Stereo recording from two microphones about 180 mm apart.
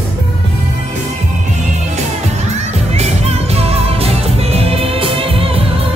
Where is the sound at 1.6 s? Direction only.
40° right (ahead or behind).